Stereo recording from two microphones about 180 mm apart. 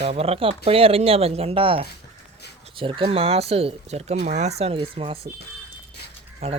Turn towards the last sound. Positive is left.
turn(degrees=-35)  # may be behind; listen again after turning